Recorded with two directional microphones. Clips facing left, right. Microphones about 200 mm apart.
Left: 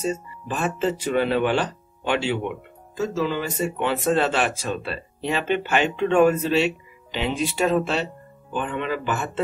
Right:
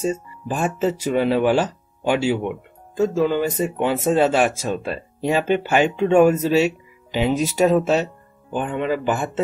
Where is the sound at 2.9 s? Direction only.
50° right (ahead or behind).